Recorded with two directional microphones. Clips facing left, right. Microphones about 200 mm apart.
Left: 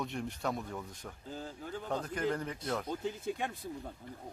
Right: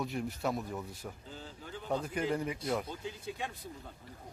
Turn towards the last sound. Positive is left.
turn(degrees=55)  # may be behind; listen again after turning